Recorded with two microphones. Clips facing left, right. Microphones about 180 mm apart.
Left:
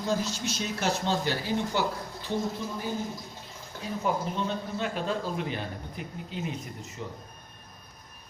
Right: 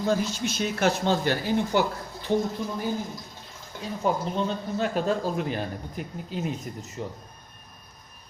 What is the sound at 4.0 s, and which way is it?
A man's voice, 40° right (ahead or behind).